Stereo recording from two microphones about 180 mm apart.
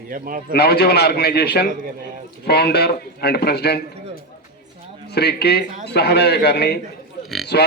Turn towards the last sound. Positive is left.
turn(degrees=65)  # may be behind; listen again after turning